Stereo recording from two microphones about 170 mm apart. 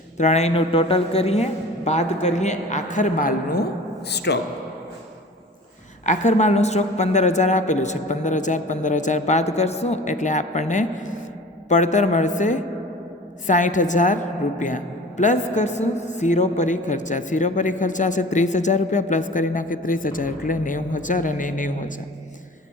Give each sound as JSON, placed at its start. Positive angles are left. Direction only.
{"t": 0.2, "sound": "a woman's voice", "side_deg": 40}
{"t": 6.1, "sound": "a woman's voice", "side_deg": 45}